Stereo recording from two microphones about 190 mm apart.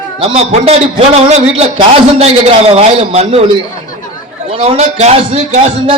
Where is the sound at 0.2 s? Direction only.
30° right (ahead or behind).